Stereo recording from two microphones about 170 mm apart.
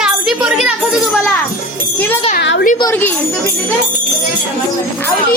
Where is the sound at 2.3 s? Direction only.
75° left (ahead or behind).